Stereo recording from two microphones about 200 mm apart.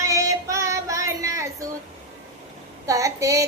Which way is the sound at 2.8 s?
15° right (ahead or behind).